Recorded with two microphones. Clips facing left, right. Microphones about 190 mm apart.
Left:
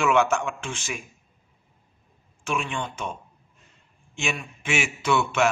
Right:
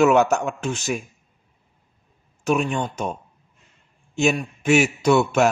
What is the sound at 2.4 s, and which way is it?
Speech, 40° right (ahead or behind).